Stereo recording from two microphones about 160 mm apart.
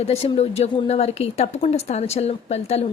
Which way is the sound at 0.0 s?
40° left (ahead or behind).